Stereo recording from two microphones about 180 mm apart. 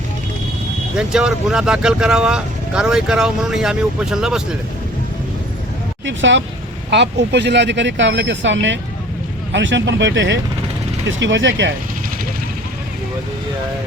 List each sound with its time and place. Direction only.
0.9 s speech: 5° right (ahead or behind)
6.1 s speech: 90° right
6.9 s speech: 75° right (ahead or behind)